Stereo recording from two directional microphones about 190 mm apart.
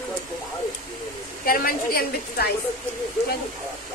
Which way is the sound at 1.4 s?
50° left (ahead or behind).